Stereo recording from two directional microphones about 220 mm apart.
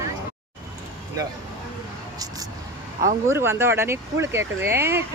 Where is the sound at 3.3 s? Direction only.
10° right (ahead or behind).